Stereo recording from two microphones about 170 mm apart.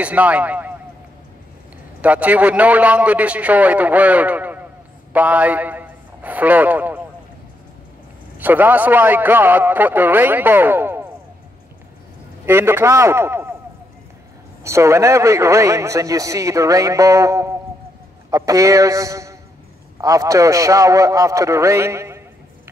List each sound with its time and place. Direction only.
0.0 s a man's voice: 10° right (ahead or behind)
2.0 s a man's voice: 10° right (ahead or behind)
8.4 s a man's voice: 10° right (ahead or behind)
12.4 s a man's voice: 15° right (ahead or behind)
14.6 s a man's voice: 15° right (ahead or behind)